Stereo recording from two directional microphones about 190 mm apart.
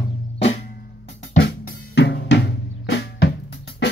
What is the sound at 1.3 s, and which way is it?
Drum, 55° left (ahead or behind).